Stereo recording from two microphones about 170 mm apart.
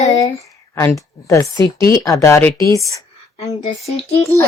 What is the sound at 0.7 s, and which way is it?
A child's voice, 15° left (ahead or behind).